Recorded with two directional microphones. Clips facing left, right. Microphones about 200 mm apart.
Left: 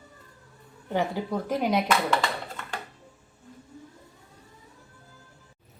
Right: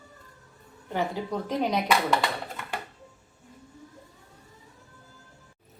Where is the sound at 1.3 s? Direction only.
5° left (ahead or behind).